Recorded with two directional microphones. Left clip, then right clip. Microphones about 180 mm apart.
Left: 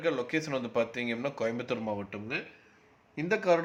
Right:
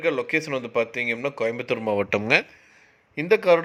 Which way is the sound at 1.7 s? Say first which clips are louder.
Right 11 dB; 40° right (ahead or behind).